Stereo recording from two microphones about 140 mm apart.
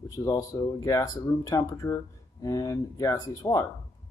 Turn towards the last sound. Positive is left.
turn(degrees=25)  # may be behind; listen again after turning